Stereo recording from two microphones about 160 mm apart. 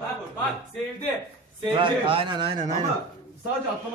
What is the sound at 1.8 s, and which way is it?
Speech, 35° right (ahead or behind).